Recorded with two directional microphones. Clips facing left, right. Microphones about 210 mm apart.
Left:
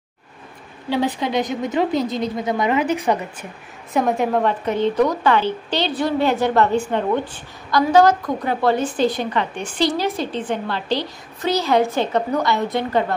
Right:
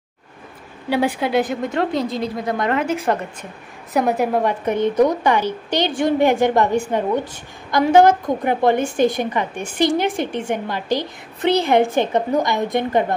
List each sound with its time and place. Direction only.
0.8 s a woman's voice: 10° right (ahead or behind)
11.0 s a woman's voice: 55° right (ahead or behind)
11.7 s a woman's voice: 15° right (ahead or behind)